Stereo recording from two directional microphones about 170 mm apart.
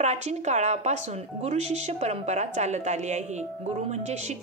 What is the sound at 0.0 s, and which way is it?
A woman's voice, 40° right (ahead or behind).